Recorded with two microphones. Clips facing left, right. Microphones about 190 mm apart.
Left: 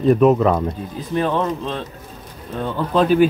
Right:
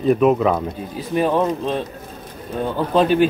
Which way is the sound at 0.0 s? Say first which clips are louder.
Left 2 dB; centre (ahead or behind).